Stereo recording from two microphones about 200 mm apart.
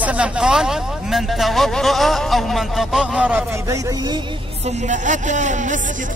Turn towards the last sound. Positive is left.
turn(degrees=-40)  # may be behind; listen again after turning